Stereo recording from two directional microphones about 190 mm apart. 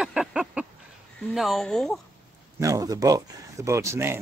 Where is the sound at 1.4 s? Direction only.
Centre (ahead or behind).